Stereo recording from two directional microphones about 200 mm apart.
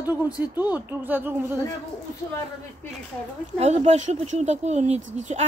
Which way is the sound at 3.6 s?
35° right (ahead or behind).